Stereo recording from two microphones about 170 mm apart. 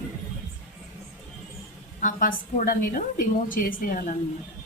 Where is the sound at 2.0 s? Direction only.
55° left (ahead or behind).